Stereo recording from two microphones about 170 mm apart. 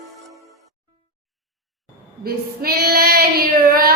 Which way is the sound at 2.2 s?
65° right (ahead or behind).